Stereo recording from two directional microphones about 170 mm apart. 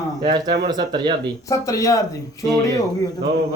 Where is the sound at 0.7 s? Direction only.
25° right (ahead or behind).